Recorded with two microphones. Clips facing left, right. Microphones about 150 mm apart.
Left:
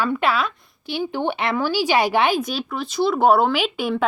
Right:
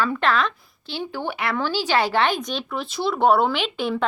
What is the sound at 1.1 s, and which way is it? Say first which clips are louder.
Speech: left 3 dB; 25° left (ahead or behind).